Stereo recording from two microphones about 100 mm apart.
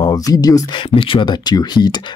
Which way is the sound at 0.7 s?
60° left (ahead or behind).